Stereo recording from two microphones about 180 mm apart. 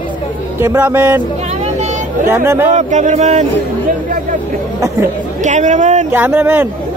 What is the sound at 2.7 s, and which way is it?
Speech, 40° right (ahead or behind).